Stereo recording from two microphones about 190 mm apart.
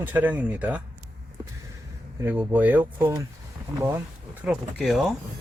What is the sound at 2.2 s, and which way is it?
Speech, 10° right (ahead or behind).